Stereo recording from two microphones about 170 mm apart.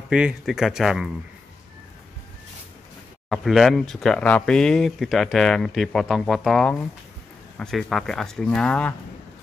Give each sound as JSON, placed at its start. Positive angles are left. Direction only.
{"t": 0.1, "sound": "speech", "side_deg": -5}
{"t": 3.3, "sound": "speech", "side_deg": 0}